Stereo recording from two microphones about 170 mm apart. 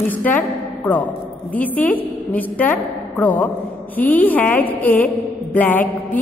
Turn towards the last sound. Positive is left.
turn(degrees=10)  # may be behind; listen again after turning